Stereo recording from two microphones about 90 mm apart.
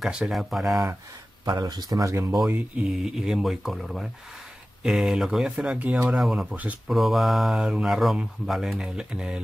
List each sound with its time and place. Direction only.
0.0 s speech: 5° right (ahead or behind)
1.4 s speech: 50° right (ahead or behind)
2.5 s speech: 10° right (ahead or behind)
6.1 s speech: 5° right (ahead or behind)
6.4 s speech: 15° right (ahead or behind)
6.9 s speech: centre (ahead or behind)